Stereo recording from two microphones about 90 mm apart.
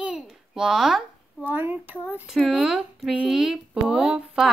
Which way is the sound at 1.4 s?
20° right (ahead or behind).